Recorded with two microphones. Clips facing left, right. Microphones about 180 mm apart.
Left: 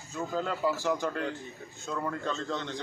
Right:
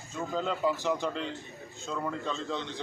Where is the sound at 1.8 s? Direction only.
Centre (ahead or behind).